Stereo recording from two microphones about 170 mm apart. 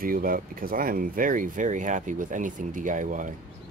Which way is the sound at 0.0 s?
55° right (ahead or behind).